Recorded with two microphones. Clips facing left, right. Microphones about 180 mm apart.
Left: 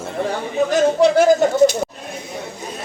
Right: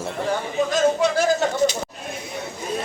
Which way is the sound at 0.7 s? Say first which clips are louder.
Left 6 dB; 65° left (ahead or behind).